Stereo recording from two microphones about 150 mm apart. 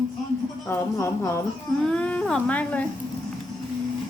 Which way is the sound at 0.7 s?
20° left (ahead or behind).